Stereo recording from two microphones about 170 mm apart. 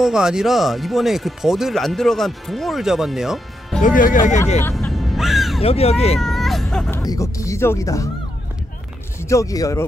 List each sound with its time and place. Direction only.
0.0 s speech: 5° right (ahead or behind)
3.8 s speech: 50° left (ahead or behind)
4.7 s music: centre (ahead or behind)
5.6 s speech: 35° left (ahead or behind)
6.1 s music: centre (ahead or behind)
7.0 s speech: 20° left (ahead or behind)
9.2 s speech: 20° left (ahead or behind)